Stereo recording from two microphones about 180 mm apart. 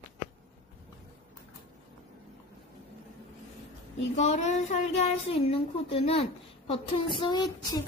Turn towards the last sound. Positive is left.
turn(degrees=25)  # may be behind; listen again after turning